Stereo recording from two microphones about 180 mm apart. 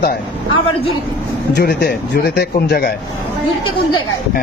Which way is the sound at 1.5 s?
70° left (ahead or behind).